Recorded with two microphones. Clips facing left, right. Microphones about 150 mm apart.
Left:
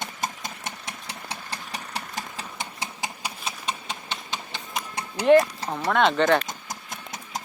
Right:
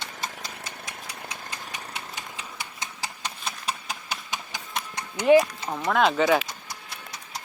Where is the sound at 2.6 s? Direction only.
20° left (ahead or behind).